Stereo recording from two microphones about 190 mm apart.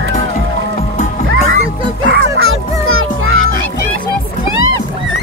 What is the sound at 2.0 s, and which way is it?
Music, 90° right.